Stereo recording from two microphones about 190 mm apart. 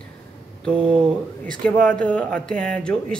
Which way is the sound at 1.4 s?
5° left (ahead or behind).